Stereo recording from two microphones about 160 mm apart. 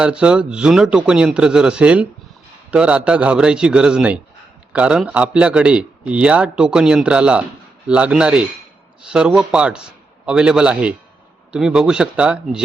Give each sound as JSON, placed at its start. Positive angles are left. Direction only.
{"t": 0.0, "sound": "a man's voice", "side_deg": -5}